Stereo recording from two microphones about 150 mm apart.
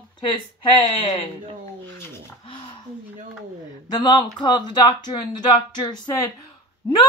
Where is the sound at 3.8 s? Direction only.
25° left (ahead or behind).